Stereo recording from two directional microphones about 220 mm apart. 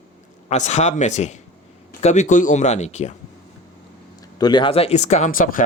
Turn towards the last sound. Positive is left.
turn(degrees=40)  # may be behind; listen again after turning